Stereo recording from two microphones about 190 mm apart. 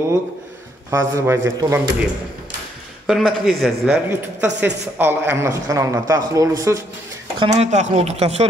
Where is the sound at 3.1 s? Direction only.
Centre (ahead or behind).